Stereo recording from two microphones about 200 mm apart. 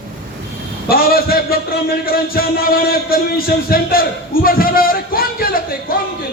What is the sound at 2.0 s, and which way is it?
A man's voice, 50° left (ahead or behind).